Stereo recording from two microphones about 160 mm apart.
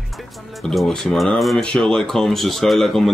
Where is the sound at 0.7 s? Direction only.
5° left (ahead or behind).